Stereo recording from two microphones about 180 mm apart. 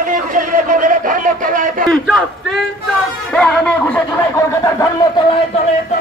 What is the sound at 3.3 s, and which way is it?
Music, 5° left (ahead or behind).